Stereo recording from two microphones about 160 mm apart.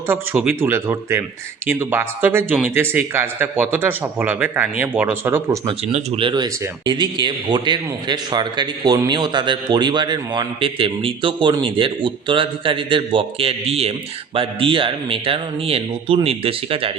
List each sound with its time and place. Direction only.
0.1 s speech: 10° right (ahead or behind)
5.9 s a man's voice: 40° right (ahead or behind)